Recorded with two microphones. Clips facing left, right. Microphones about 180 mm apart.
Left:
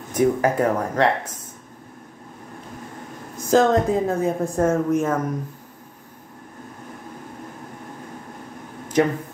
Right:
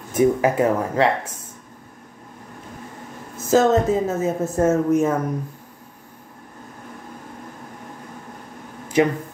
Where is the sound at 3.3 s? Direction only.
5° right (ahead or behind).